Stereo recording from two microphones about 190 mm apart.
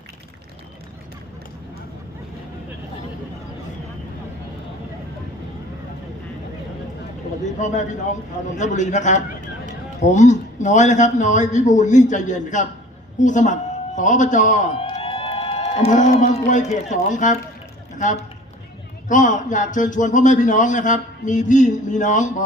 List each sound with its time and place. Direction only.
7.4 s a man's voice: 40° left (ahead or behind)
14.8 s a sound: 30° left (ahead or behind)
15.9 s a man's voice: 40° left (ahead or behind)